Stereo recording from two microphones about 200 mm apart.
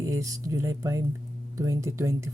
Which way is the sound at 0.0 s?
15° right (ahead or behind).